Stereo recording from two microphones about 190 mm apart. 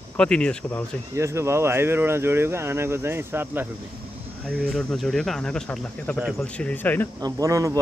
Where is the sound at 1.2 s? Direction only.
15° right (ahead or behind).